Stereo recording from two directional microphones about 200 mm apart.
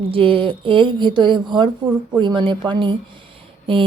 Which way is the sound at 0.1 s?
25° right (ahead or behind).